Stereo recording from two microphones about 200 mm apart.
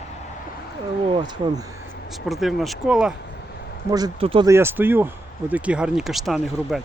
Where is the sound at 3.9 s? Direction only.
25° right (ahead or behind).